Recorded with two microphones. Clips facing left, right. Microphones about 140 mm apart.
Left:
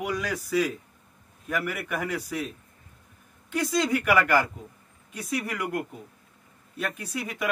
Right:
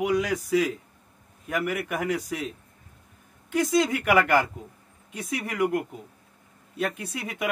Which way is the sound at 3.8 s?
15° right (ahead or behind).